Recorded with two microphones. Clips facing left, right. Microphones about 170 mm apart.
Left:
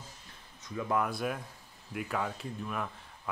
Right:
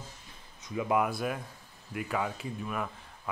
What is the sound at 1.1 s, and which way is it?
Speech, centre (ahead or behind).